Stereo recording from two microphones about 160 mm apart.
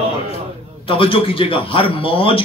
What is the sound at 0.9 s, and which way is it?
A man's voice, 35° left (ahead or behind).